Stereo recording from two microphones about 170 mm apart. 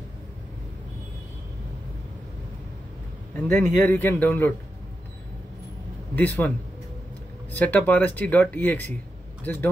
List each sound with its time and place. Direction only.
3.3 s speech: 10° left (ahead or behind)
6.1 s speech: 10° left (ahead or behind)
7.5 s speech: 10° left (ahead or behind)